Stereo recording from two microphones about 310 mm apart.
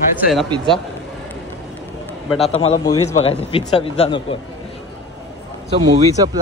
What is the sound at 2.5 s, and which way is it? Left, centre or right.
A man's voice, centre.